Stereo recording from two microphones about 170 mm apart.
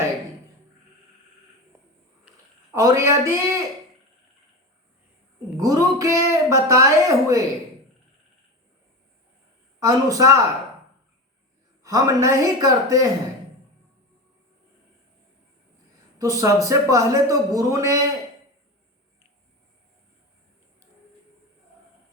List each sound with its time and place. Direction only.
2.7 s speech: 15° right (ahead or behind)
5.5 s speech: 20° right (ahead or behind)
9.8 s speech: 20° right (ahead or behind)
11.8 s speech: 20° right (ahead or behind)
16.1 s speech: 20° right (ahead or behind)